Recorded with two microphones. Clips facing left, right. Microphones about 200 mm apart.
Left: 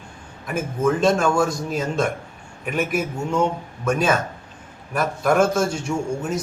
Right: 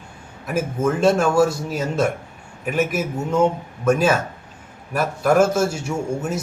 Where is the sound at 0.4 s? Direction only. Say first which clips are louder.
Even; 5° right (ahead or behind).